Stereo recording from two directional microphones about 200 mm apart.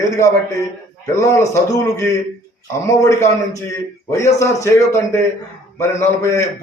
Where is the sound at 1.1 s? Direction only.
15° left (ahead or behind).